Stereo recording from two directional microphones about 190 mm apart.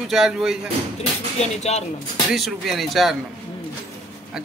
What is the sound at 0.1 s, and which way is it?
Speech, centre (ahead or behind).